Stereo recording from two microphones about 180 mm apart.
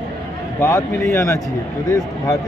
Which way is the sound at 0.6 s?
15° left (ahead or behind).